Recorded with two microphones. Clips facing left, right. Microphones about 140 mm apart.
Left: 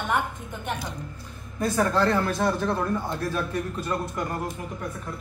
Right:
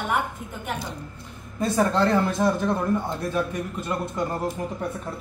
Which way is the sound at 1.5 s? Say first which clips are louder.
Right 1 dB; 25° right (ahead or behind).